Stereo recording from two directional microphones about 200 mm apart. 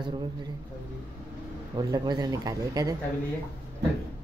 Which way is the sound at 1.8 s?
20° right (ahead or behind).